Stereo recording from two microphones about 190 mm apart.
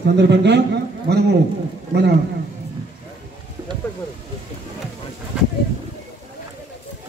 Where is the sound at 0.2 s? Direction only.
65° right (ahead or behind).